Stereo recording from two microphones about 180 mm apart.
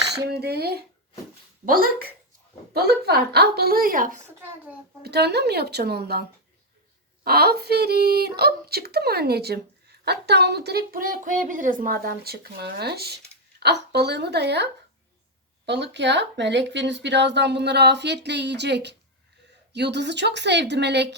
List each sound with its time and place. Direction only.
0.1 s a sound: 65° right (ahead or behind)
1.6 s speech: 55° right (ahead or behind)
5.0 s speech: 65° right (ahead or behind)
7.3 s speech: 60° right (ahead or behind)